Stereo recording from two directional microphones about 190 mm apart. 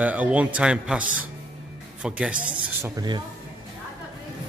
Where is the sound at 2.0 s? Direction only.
5° right (ahead or behind).